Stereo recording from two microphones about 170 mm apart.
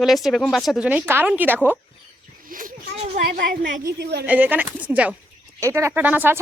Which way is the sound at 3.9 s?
80° right.